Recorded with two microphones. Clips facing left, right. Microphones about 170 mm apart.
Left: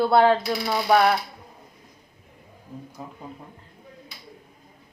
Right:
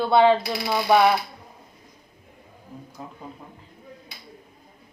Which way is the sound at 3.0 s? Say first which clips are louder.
Right 1 dB; 5° left (ahead or behind).